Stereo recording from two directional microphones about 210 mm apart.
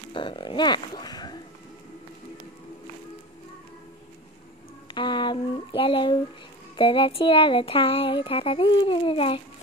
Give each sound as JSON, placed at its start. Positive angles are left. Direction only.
{"t": 0.1, "sound": "speech", "side_deg": 25}
{"t": 4.9, "sound": "speech", "side_deg": 20}